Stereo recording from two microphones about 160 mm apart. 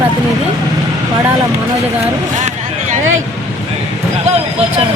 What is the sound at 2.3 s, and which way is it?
Vehicle, 50° right (ahead or behind).